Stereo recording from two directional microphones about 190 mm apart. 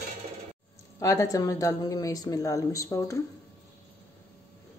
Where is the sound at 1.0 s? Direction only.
15° left (ahead or behind).